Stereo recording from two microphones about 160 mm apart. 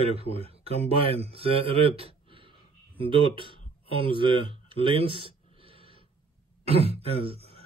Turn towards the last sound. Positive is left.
turn(degrees=-35)  # may be behind; listen again after turning